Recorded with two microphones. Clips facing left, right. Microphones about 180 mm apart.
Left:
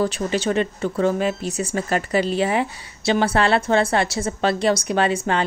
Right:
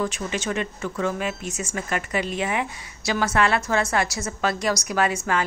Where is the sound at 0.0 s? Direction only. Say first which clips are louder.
Left 5 dB; 35° left (ahead or behind).